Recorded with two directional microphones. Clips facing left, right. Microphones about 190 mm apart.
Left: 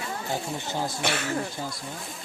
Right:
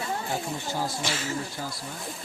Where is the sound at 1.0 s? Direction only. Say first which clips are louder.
Left 3 dB; 60° left (ahead or behind).